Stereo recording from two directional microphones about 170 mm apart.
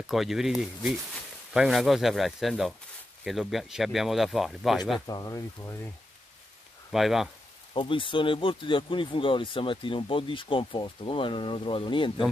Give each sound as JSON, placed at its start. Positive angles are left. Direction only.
{"t": 0.0, "sound": "speech", "side_deg": 0}
{"t": 5.0, "sound": "speech", "side_deg": 20}
{"t": 6.9, "sound": "speech", "side_deg": 0}
{"t": 7.7, "sound": "speech", "side_deg": 30}